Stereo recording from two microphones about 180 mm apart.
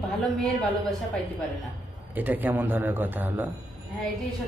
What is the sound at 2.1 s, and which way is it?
A man's voice, 10° right (ahead or behind).